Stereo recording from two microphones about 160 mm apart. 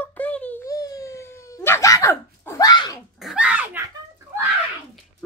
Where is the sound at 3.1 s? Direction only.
5° right (ahead or behind).